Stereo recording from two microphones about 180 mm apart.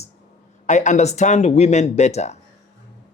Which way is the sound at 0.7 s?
40° left (ahead or behind).